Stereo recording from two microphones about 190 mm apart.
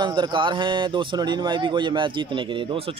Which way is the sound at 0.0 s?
25° right (ahead or behind).